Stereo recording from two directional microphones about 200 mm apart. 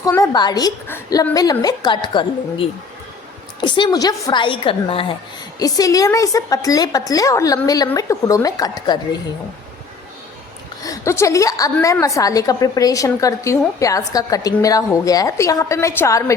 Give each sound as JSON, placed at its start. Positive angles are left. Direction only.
{"t": 0.0, "sound": "a woman's voice", "side_deg": 15}
{"t": 10.8, "sound": "a woman's voice", "side_deg": 15}